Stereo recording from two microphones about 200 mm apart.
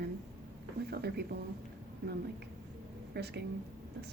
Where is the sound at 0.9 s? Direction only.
55° right (ahead or behind).